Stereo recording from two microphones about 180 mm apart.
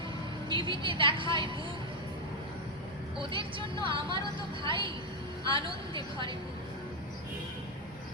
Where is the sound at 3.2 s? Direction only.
25° right (ahead or behind).